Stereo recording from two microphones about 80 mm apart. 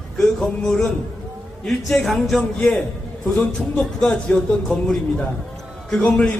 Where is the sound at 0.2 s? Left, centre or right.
Centre.